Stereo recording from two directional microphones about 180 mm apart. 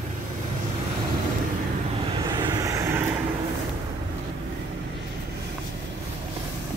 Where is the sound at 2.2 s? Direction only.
25° right (ahead or behind).